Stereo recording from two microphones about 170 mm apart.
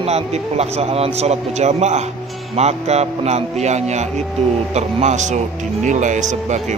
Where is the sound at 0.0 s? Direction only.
40° right (ahead or behind).